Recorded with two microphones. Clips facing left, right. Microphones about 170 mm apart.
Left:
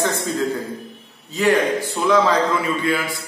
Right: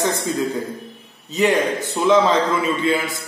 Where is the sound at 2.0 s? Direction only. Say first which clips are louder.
Right 2 dB; 20° right (ahead or behind).